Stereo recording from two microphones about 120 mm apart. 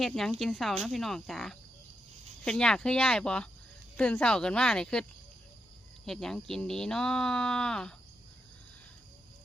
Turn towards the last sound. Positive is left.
turn(degrees=5)  # may be behind; listen again after turning